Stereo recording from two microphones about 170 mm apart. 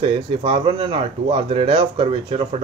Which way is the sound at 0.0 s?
35° right (ahead or behind).